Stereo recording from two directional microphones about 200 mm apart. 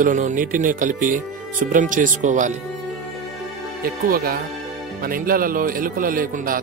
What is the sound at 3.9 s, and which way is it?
A man's voice, 45° right (ahead or behind).